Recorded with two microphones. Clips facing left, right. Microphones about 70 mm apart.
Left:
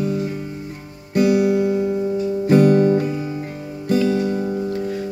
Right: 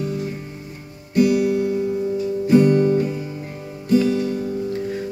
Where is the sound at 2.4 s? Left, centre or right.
Left.